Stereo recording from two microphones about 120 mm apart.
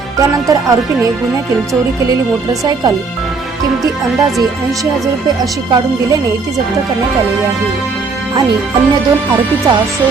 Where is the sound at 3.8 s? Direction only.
30° right (ahead or behind).